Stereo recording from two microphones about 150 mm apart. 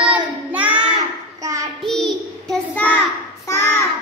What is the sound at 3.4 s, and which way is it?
Child singing, 20° left (ahead or behind).